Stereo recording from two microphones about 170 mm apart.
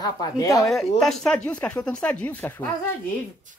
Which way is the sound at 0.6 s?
Centre (ahead or behind).